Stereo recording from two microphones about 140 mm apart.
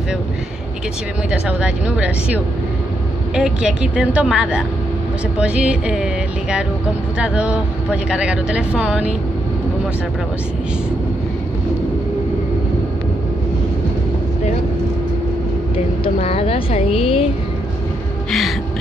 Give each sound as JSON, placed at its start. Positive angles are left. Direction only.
{"t": 1.3, "sound": "speech", "side_deg": -10}
{"t": 7.2, "sound": "speech", "side_deg": -10}
{"t": 16.0, "sound": "a woman's voice", "side_deg": 40}